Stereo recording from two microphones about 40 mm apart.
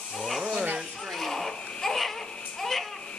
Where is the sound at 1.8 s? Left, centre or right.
Centre.